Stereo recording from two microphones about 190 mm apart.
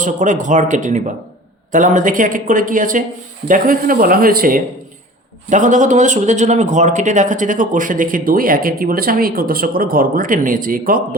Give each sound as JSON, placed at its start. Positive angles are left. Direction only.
{"t": 0.0, "sound": "a man's voice", "side_deg": -40}